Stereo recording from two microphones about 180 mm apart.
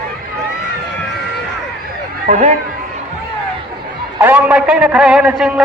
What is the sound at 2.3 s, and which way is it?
Speech, 40° right (ahead or behind).